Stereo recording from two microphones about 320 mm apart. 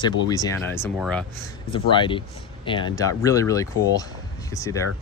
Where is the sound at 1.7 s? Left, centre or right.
Centre.